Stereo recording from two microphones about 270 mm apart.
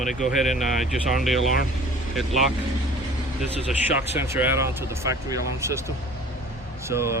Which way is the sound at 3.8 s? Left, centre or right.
Centre.